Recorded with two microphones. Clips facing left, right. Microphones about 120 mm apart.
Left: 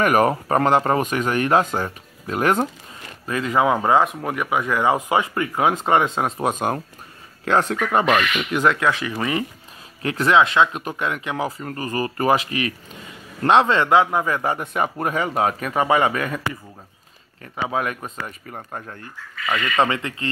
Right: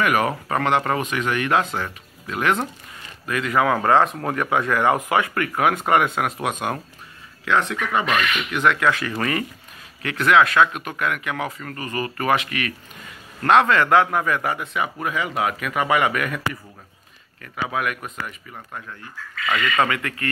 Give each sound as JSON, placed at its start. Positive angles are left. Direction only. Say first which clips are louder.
{"t": 0.0, "sound": "speech", "louder": "left 3 dB", "side_deg": 40}
{"t": 3.3, "sound": "speech", "louder": "left 1 dB", "side_deg": 25}
{"t": 8.8, "sound": "speech", "louder": "even", "side_deg": 15}
{"t": 10.0, "sound": "speech", "louder": "even", "side_deg": 30}
{"t": 14.6, "sound": "speech", "louder": "left 3 dB", "side_deg": 45}
{"t": 17.4, "sound": "speech", "louder": "left 2 dB", "side_deg": 30}
{"t": 19.8, "sound": "speech", "louder": "left 1 dB", "side_deg": 25}